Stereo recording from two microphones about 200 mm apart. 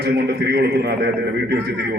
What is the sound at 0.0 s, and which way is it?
A man's voice, 55° right (ahead or behind).